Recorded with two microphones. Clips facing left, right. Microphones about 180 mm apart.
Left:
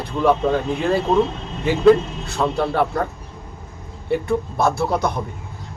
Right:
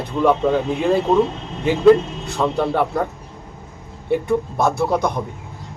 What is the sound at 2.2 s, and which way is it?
Speech, 15° right (ahead or behind).